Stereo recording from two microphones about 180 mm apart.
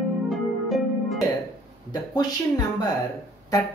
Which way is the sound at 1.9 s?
20° left (ahead or behind).